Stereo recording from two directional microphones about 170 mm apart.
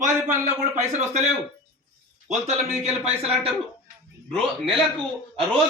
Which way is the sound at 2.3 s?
40° right (ahead or behind).